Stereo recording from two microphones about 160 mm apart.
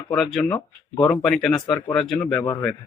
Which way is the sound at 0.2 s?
5° left (ahead or behind).